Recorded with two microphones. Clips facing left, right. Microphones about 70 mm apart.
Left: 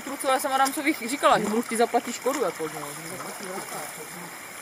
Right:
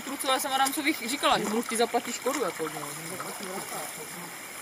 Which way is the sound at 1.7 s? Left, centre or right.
Left.